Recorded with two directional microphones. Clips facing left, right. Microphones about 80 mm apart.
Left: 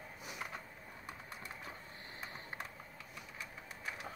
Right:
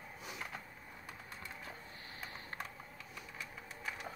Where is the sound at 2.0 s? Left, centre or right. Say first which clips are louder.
Left 1 dB; left.